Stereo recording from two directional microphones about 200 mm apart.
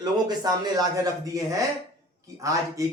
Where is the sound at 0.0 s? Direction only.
20° right (ahead or behind).